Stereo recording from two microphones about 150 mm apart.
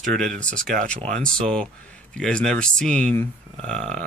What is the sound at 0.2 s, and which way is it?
Speech, 5° left (ahead or behind).